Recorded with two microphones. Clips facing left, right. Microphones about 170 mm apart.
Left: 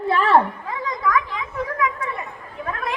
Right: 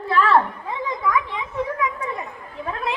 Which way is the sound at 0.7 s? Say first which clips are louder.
Even; 25° right (ahead or behind).